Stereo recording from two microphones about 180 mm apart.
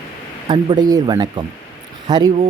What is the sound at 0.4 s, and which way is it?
Speech, 25° right (ahead or behind).